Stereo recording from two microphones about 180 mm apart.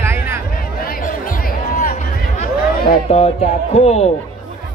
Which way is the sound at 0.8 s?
50° left (ahead or behind).